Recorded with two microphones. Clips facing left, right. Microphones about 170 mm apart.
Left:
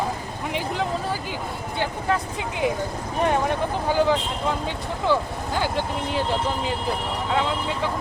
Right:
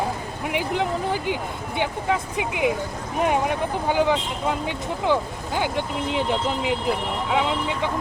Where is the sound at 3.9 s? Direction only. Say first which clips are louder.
Even; 15° right (ahead or behind).